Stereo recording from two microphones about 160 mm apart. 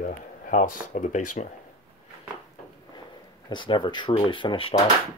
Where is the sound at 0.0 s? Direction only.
55° left (ahead or behind).